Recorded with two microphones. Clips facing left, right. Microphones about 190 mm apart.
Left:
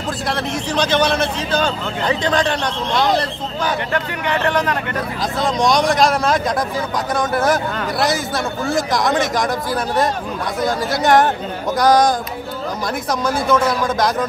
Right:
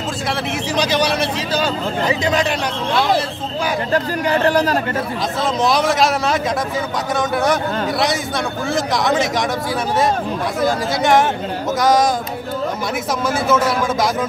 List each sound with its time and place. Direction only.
0.7 s speech: 10° right (ahead or behind)
3.9 s speech: 35° right (ahead or behind)
5.6 s speech: 5° right (ahead or behind)
8.6 s speech: centre (ahead or behind)
10.6 s speech: centre (ahead or behind)
13.3 s speech: 5° right (ahead or behind)